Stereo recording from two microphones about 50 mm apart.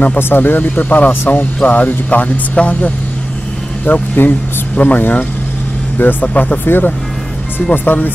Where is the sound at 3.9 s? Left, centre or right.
Left.